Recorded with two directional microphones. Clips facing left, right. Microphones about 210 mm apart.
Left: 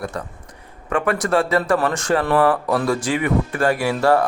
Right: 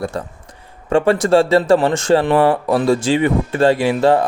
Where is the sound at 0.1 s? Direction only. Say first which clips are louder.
Right 4 dB; 30° right (ahead or behind).